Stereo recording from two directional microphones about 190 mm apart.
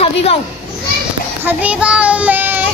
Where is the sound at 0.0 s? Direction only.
30° left (ahead or behind).